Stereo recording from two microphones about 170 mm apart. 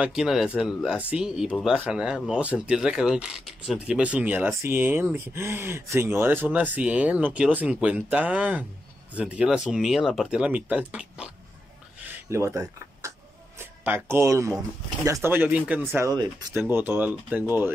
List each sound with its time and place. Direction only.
0.0 s speech: 5° right (ahead or behind)
12.1 s a sound: 15° right (ahead or behind)
13.6 s speech: 15° right (ahead or behind)
15.9 s speech: 20° right (ahead or behind)